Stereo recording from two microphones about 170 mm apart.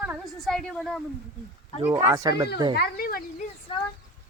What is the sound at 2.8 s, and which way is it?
Speech, 60° left (ahead or behind).